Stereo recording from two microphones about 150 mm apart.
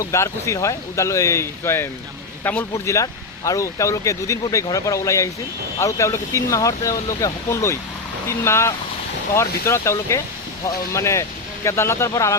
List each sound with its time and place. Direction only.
0.0 s speech: 20° left (ahead or behind)